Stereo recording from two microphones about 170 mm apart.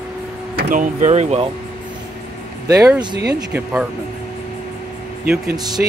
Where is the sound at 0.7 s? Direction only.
45° right (ahead or behind).